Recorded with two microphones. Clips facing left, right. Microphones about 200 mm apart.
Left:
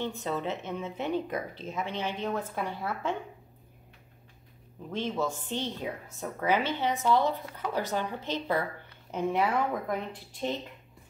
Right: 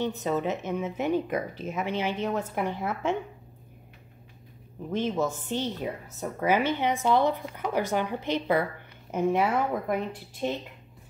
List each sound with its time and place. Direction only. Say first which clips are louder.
0.1 s a woman's voice: right 4 dB; 10° right (ahead or behind)
4.9 s a woman's voice: right 4 dB; 15° right (ahead or behind)